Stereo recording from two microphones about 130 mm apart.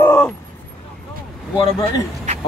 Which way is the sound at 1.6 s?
30° left (ahead or behind).